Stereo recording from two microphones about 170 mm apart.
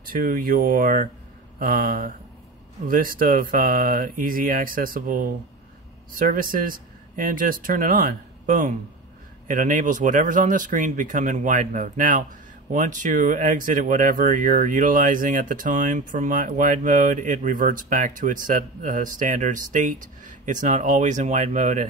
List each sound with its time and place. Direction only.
0.0 s speech: 55° right (ahead or behind)